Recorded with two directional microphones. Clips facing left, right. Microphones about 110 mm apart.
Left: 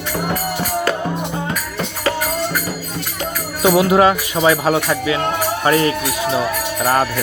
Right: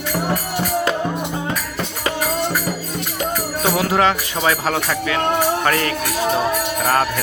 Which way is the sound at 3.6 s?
10° left (ahead or behind).